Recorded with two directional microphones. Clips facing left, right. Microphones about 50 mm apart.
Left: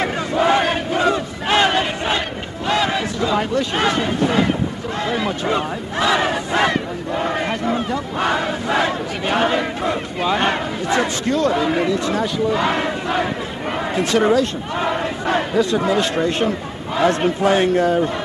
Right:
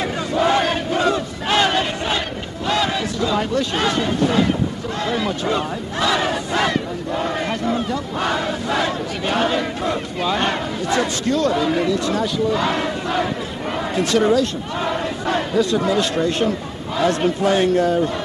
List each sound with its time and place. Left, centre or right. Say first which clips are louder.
0.3 s battle cry: left 1 dB; left